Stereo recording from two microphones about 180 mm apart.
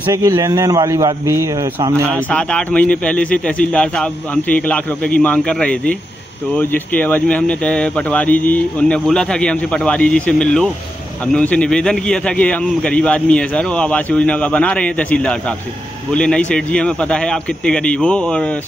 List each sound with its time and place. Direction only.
0.1 s speech: 20° right (ahead or behind)
2.2 s a man's voice: 5° left (ahead or behind)